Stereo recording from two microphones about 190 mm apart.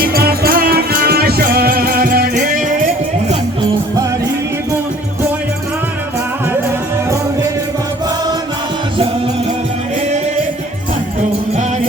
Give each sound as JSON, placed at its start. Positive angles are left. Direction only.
{"t": 0.0, "sound": "music", "side_deg": -55}